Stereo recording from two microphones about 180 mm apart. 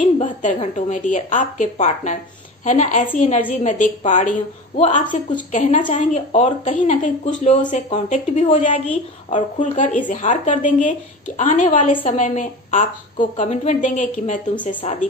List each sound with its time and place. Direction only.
0.0 s a woman's voice: 45° left (ahead or behind)